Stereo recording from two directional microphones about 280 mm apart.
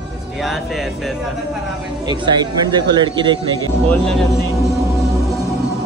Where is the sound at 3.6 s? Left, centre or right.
Centre.